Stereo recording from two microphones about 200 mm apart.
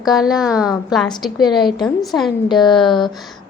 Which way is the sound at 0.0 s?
Centre (ahead or behind).